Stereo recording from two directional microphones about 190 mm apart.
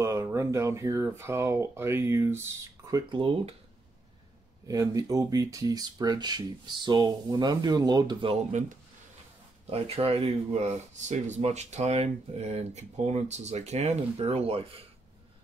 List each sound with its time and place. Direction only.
0.0 s speech: 15° right (ahead or behind)
2.9 s speech: 25° right (ahead or behind)
4.6 s speech: 20° right (ahead or behind)